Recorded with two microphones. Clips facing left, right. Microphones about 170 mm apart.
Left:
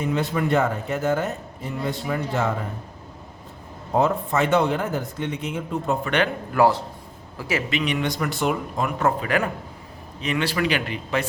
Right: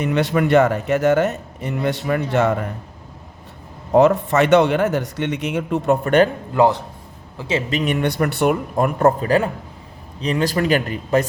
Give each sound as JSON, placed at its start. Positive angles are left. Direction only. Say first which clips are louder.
{"t": 0.0, "sound": "a man's voice", "louder": "right 5 dB", "side_deg": -75}
{"t": 3.9, "sound": "a man's voice", "louder": "right 7 dB", "side_deg": -75}
{"t": 6.1, "sound": "a man's voice", "louder": "right 9 dB", "side_deg": -40}
{"t": 6.5, "sound": "a man's voice", "louder": "right 3 dB", "side_deg": -20}
{"t": 7.7, "sound": "a man's voice", "louder": "right 5 dB", "side_deg": -45}
{"t": 10.2, "sound": "speech", "louder": "right 4 dB", "side_deg": -35}